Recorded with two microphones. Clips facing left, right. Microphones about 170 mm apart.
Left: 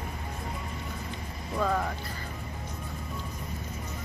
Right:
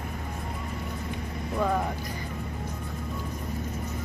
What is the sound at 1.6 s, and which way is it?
Speech, 10° right (ahead or behind).